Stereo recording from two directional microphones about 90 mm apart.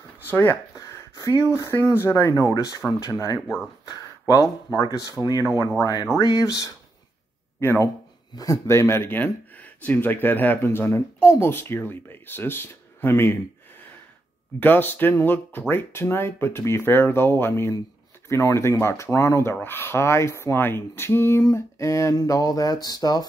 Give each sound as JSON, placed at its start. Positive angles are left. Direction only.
{"t": 0.3, "sound": "speech", "side_deg": 25}
{"t": 0.7, "sound": "a sound", "side_deg": 30}
{"t": 1.1, "sound": "speech", "side_deg": 35}
{"t": 3.4, "sound": "speech", "side_deg": -5}
{"t": 3.8, "sound": "speech", "side_deg": 40}
{"t": 7.6, "sound": "speech", "side_deg": 25}
{"t": 14.6, "sound": "speech", "side_deg": 20}